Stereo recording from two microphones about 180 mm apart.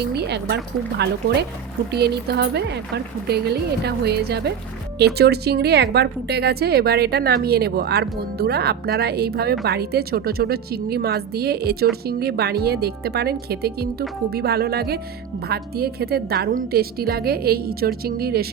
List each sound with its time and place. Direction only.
0.0 s a woman's voice: 65° right (ahead or behind)